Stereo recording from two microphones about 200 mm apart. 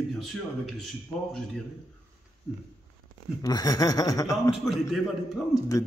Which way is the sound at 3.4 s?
20° left (ahead or behind).